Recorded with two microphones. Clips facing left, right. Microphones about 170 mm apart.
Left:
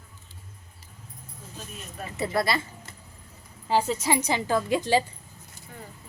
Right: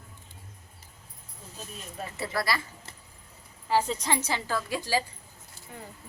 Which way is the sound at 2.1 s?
20° left (ahead or behind).